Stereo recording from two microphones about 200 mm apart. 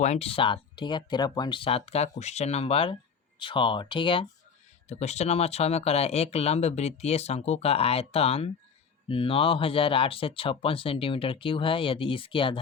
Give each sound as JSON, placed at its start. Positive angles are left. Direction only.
{"t": 0.0, "sound": "speech", "side_deg": 30}